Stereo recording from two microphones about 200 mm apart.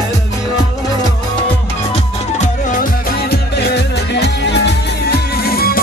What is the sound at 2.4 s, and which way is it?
Music, 40° left (ahead or behind).